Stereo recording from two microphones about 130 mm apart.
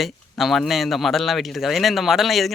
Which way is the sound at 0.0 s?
Centre (ahead or behind).